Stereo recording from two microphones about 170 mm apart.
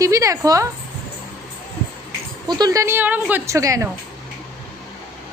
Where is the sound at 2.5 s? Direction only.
25° right (ahead or behind).